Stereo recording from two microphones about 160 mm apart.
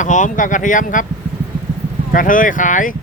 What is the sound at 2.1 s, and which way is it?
Speech, 55° left (ahead or behind).